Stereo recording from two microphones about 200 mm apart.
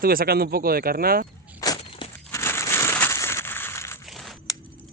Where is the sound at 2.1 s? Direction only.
10° left (ahead or behind).